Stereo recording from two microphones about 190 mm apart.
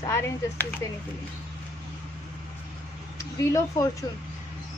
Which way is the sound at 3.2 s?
15° left (ahead or behind).